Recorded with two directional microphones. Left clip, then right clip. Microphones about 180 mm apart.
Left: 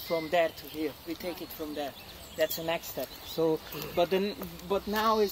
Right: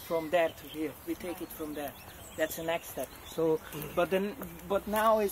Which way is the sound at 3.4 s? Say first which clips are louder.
Left 1 dB; 20° left (ahead or behind).